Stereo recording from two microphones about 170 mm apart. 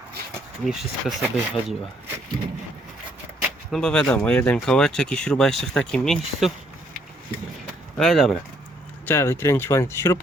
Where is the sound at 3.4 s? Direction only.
5° left (ahead or behind).